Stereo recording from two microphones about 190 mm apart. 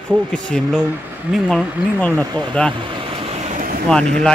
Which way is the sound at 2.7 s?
25° right (ahead or behind).